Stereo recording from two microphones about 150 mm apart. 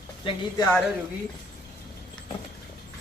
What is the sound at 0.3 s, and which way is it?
Speech, 25° left (ahead or behind).